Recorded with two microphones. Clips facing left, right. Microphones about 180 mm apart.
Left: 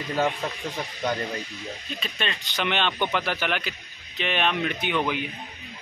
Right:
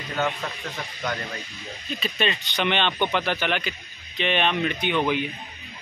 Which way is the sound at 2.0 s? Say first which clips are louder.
Right 7 dB; 5° right (ahead or behind).